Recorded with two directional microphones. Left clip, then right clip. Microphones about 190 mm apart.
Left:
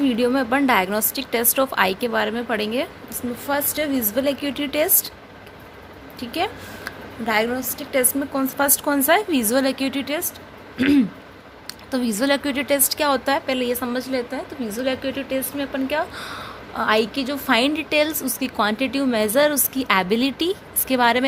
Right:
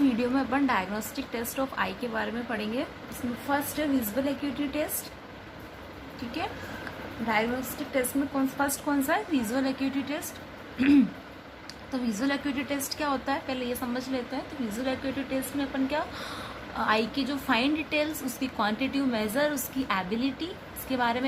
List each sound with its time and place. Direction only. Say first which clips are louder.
0.0 s a woman's voice: left 7 dB; 45° left (ahead or behind)
7.9 s speech: left 7 dB; 55° left (ahead or behind)
10.8 s speech: left 4 dB; 40° left (ahead or behind)